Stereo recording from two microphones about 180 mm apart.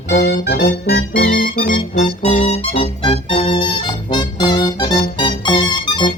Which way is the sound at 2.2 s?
35° left (ahead or behind).